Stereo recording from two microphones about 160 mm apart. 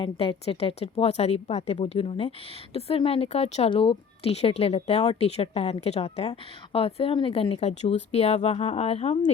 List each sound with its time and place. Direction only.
0.0 s speech: 35° left (ahead or behind)